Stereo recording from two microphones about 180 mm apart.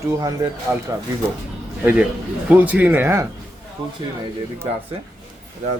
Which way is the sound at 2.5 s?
10° right (ahead or behind).